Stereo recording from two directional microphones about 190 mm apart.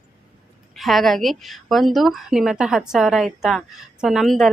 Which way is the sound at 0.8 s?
Centre (ahead or behind).